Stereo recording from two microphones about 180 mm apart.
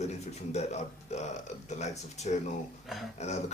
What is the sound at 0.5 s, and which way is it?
Speech, 40° left (ahead or behind).